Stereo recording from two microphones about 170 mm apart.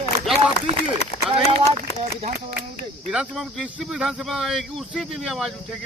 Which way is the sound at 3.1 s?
5° right (ahead or behind).